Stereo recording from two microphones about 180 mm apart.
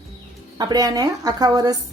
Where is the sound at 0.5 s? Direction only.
20° right (ahead or behind).